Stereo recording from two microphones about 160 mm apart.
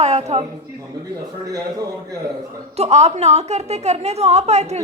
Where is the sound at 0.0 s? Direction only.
40° right (ahead or behind).